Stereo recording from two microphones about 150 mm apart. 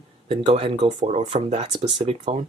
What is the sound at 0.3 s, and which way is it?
Speech, 40° right (ahead or behind).